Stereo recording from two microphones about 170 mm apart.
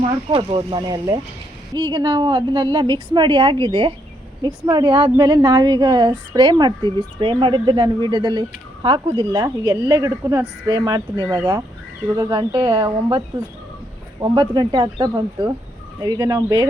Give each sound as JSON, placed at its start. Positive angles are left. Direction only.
{"t": 0.0, "sound": "a woman's voice", "side_deg": -30}